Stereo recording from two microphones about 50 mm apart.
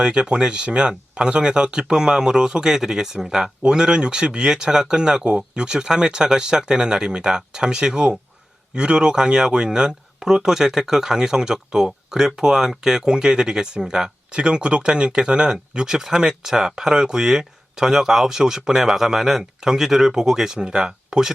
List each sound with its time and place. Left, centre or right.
0.0 s speech: centre